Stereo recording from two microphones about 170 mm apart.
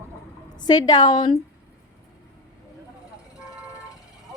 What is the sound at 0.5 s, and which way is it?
Speech, 25° left (ahead or behind).